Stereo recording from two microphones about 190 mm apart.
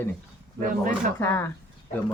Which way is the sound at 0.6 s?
45° right (ahead or behind).